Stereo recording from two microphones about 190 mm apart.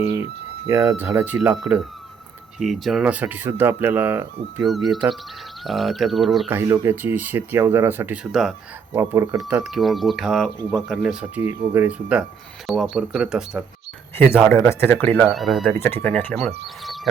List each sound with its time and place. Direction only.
0.7 s speech: 15° right (ahead or behind)
4.6 s speech: centre (ahead or behind)
6.5 s speech: 10° right (ahead or behind)
9.0 s speech: 15° right (ahead or behind)
9.5 s speech: 5° right (ahead or behind)
14.5 s speech: 10° left (ahead or behind)
16.8 s a sound: centre (ahead or behind)